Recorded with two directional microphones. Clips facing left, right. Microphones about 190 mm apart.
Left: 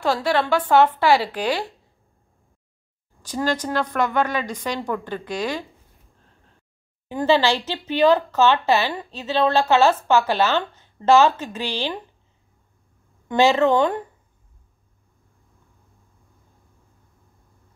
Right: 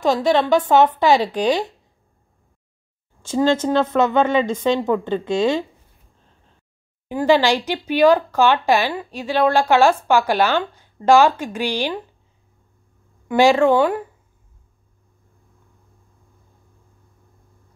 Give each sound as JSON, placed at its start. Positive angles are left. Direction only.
{"t": 0.0, "sound": "a woman's voice", "side_deg": -20}
{"t": 3.2, "sound": "a woman's voice", "side_deg": -25}
{"t": 7.1, "sound": "speech", "side_deg": -15}
{"t": 13.3, "sound": "speech", "side_deg": -10}